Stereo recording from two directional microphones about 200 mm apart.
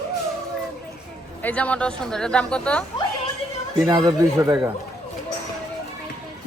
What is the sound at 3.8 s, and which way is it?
Speech, 20° right (ahead or behind).